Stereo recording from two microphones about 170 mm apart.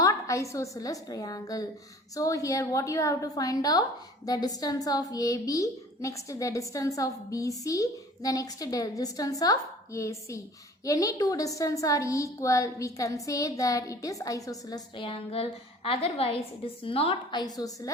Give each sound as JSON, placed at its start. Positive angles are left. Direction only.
{"t": 0.0, "sound": "a woman's voice", "side_deg": 20}